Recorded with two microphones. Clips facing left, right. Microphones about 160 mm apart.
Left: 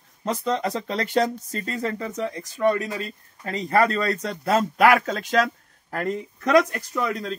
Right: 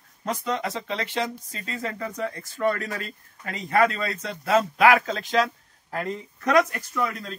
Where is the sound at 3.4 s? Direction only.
35° left (ahead or behind).